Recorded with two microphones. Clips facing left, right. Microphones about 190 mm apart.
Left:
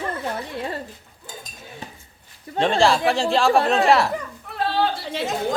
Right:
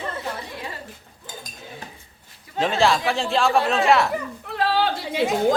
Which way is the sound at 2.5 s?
Centre (ahead or behind).